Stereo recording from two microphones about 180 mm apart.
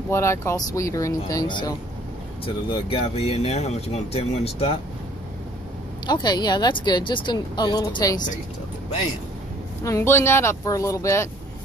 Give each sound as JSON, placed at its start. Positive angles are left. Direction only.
{"t": 0.1, "sound": "speech", "side_deg": 15}
{"t": 6.0, "sound": "a woman's voice", "side_deg": 25}
{"t": 9.8, "sound": "speech", "side_deg": 15}